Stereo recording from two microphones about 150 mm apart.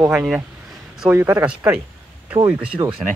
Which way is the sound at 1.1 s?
20° right (ahead or behind).